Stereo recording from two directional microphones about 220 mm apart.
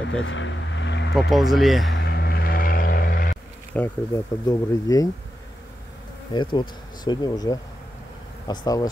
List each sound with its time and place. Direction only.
0.2 s speech: 55° left (ahead or behind)
1.1 s speech: centre (ahead or behind)
2.0 s vehicle: 45° left (ahead or behind)
3.7 s speech: 10° left (ahead or behind)
6.3 s bee: 20° left (ahead or behind)
7.1 s speech: 20° left (ahead or behind)